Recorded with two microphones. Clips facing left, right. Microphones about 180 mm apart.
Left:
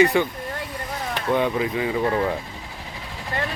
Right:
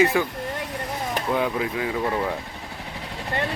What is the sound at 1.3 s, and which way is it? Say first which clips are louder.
Speech: left 4 dB; centre (ahead or behind).